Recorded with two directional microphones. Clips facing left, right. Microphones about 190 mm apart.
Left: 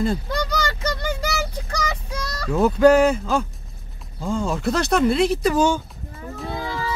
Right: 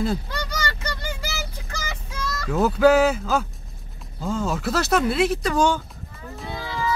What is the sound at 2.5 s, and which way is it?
Speech, 5° right (ahead or behind).